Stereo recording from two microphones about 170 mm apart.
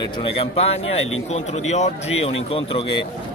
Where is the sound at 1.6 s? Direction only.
40° left (ahead or behind).